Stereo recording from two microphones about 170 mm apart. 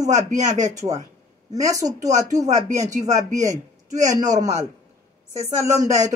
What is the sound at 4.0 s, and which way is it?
Speech, 20° right (ahead or behind).